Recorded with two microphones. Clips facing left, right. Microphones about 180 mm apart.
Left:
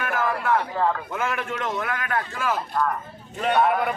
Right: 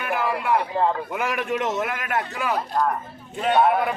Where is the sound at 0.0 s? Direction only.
10° right (ahead or behind).